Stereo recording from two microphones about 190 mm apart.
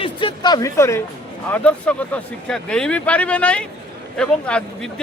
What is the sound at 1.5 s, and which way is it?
Speech, 5° left (ahead or behind).